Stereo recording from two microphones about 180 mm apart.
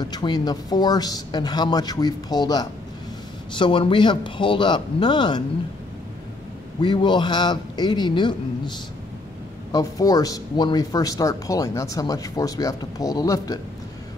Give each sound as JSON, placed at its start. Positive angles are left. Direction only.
{"t": 0.0, "sound": "speech", "side_deg": 25}
{"t": 6.8, "sound": "speech", "side_deg": 25}